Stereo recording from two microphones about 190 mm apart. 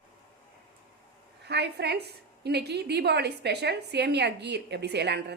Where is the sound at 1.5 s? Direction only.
60° right (ahead or behind).